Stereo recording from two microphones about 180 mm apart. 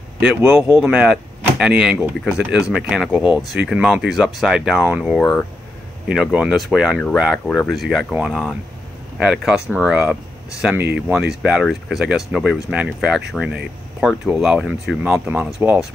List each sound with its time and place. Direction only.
0.2 s speech: 10° right (ahead or behind)